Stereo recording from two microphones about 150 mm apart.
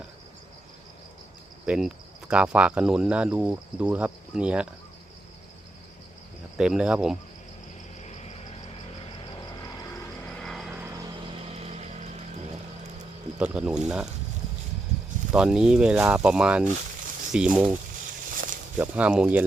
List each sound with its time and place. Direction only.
1.6 s speech: 5° right (ahead or behind)
6.6 s speech: 5° right (ahead or behind)
8.0 s a sound: 45° left (ahead or behind)
10.4 s vehicle: centre (ahead or behind)
11.5 s vehicle: 45° right (ahead or behind)
13.4 s speech: 5° right (ahead or behind)
15.3 s speech: 5° right (ahead or behind)
18.3 s a sound: 65° right (ahead or behind)
18.8 s speech: 10° right (ahead or behind)